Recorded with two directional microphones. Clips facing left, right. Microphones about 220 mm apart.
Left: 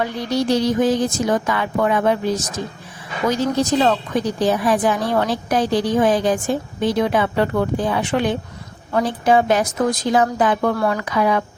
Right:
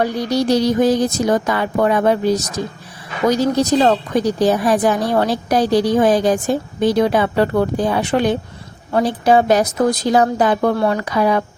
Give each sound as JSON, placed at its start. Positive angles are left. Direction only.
{"t": 0.0, "sound": "a woman's voice", "side_deg": -40}